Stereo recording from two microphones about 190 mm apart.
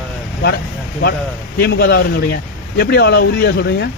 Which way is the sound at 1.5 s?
60° left (ahead or behind).